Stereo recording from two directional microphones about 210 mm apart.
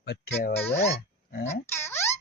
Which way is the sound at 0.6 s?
10° left (ahead or behind).